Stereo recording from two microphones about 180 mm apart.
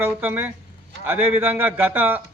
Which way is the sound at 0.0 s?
10° right (ahead or behind).